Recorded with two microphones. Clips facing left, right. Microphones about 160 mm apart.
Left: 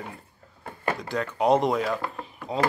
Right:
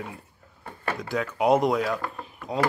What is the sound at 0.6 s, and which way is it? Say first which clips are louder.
Door: left 2 dB; 5° left (ahead or behind).